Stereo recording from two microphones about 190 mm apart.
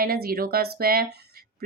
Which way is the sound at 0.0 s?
50° right (ahead or behind).